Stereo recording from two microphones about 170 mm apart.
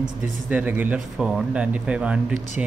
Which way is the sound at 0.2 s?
10° right (ahead or behind).